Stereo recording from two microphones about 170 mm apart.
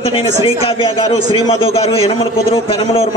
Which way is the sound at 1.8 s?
35° left (ahead or behind).